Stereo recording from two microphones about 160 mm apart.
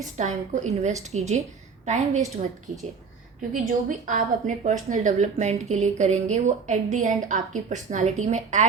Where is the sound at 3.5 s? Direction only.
55° right (ahead or behind).